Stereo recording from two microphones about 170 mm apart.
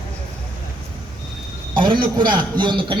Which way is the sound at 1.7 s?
30° right (ahead or behind).